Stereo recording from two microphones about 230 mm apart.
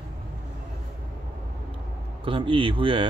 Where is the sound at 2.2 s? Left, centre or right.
Right.